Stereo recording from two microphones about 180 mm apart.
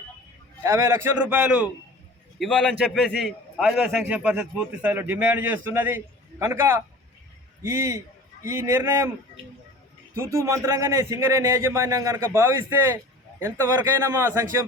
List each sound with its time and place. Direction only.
0.6 s a man's voice: 15° right (ahead or behind)
2.4 s a man's voice: 5° left (ahead or behind); by 9.0 s 15° right (ahead or behind)
10.3 s a man's voice: 15° right (ahead or behind)